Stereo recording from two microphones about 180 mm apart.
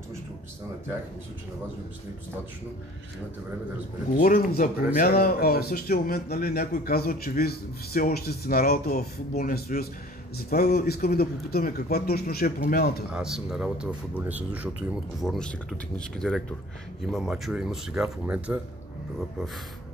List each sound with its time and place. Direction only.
4.2 s speech: 50° left (ahead or behind)
13.1 s speech: 5° right (ahead or behind)
15.1 s speech: centre (ahead or behind)